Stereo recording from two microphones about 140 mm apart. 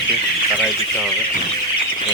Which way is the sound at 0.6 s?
Centre (ahead or behind).